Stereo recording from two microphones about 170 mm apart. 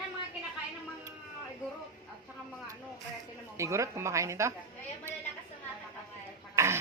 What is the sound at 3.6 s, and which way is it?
Speech, 15° right (ahead or behind).